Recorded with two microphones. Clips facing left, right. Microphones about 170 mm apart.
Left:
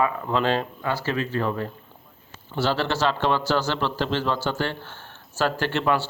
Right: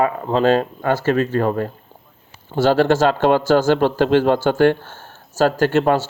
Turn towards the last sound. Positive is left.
turn(degrees=-45)  # may be behind; listen again after turning